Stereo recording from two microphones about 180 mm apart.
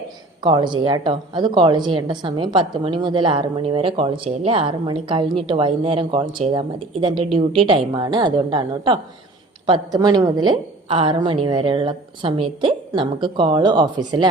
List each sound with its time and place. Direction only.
0.4 s a woman's voice: 25° right (ahead or behind)